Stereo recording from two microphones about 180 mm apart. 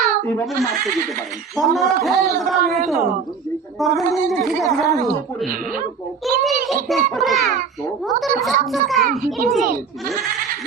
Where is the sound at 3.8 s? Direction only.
Centre (ahead or behind).